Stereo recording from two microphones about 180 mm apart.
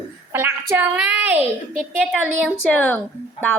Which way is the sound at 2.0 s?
Centre (ahead or behind).